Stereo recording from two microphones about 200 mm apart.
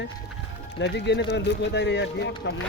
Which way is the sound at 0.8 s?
60° left (ahead or behind).